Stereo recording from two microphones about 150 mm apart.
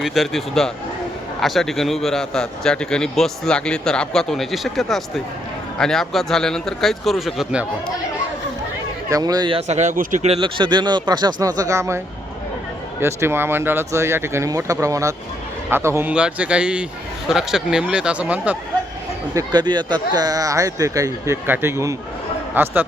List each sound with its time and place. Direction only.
0.0 s a man's voice: centre (ahead or behind)
9.0 s speech: 25° right (ahead or behind)
9.6 s speech: 50° right (ahead or behind)
10.2 s speech: 35° right (ahead or behind); by 11.9 s 20° right (ahead or behind)
13.0 s a man's voice: 15° right (ahead or behind)
19.3 s speech: 25° right (ahead or behind)